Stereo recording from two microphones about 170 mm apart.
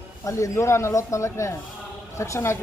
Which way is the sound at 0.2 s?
15° left (ahead or behind).